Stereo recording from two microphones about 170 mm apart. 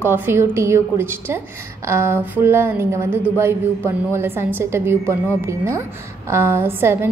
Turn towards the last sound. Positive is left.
turn(degrees=-15)  # may be behind; listen again after turning